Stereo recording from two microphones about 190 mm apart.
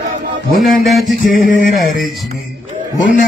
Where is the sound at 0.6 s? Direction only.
Centre (ahead or behind).